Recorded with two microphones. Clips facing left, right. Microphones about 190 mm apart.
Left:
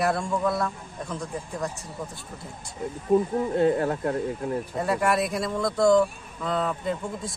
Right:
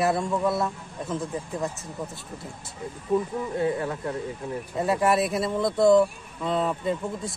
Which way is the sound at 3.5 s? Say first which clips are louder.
Left 4 dB; 55° left (ahead or behind).